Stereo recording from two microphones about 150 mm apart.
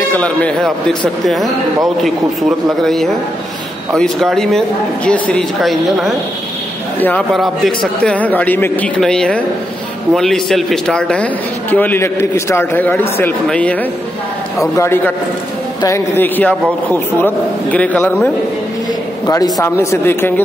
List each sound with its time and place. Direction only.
0.1 s speech: 10° left (ahead or behind)
2.8 s speech: centre (ahead or behind)
7.0 s a man's voice: 10° left (ahead or behind)
7.3 s a man's voice: centre (ahead or behind)
14.8 s a man's voice: 15° left (ahead or behind)
19.2 s a man's voice: 25° left (ahead or behind)